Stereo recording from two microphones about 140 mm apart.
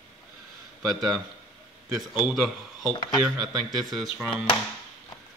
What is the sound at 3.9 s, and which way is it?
Speech, centre (ahead or behind).